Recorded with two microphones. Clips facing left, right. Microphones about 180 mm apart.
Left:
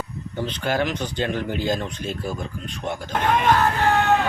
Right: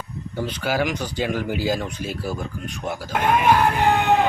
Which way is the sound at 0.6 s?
5° right (ahead or behind).